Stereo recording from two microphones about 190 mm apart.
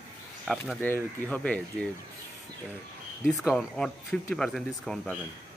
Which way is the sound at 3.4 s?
Centre (ahead or behind).